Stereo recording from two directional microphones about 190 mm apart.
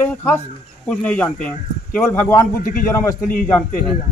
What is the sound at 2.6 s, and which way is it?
Speech, 45° left (ahead or behind).